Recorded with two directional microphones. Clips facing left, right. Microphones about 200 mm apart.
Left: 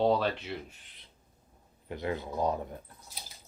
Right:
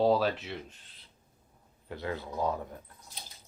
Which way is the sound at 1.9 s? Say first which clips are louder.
Left 2 dB; 20° left (ahead or behind).